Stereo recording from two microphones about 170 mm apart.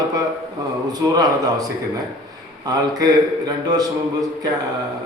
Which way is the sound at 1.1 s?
25° right (ahead or behind).